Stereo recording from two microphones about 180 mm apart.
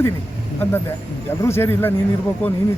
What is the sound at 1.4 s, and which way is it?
A man's voice, 15° left (ahead or behind).